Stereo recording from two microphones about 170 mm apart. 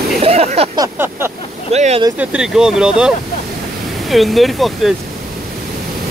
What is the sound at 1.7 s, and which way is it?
Speech, 40° right (ahead or behind).